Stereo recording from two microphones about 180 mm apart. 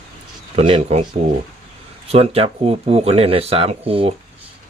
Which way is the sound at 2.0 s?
35° right (ahead or behind).